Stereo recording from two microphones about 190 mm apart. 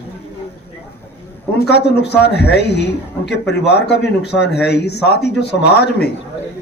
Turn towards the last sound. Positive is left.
turn(degrees=60)  # may be behind; listen again after turning